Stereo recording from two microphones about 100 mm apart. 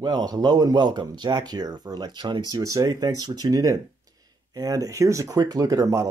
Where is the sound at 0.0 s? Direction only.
40° right (ahead or behind).